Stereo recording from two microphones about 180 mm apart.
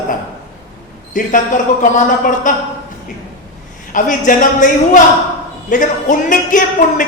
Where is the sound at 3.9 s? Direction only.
50° left (ahead or behind).